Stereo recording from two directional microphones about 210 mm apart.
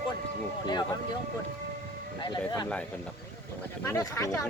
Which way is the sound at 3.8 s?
15° left (ahead or behind).